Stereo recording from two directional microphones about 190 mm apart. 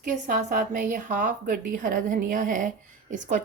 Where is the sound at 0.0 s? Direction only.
45° right (ahead or behind).